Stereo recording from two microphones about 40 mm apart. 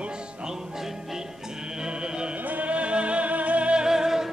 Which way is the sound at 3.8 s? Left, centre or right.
Centre.